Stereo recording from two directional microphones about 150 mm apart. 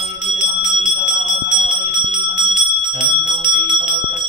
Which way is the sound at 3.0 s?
30° right (ahead or behind).